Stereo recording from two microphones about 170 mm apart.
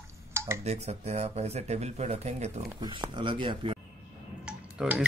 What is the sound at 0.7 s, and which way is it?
Speech, 40° right (ahead or behind).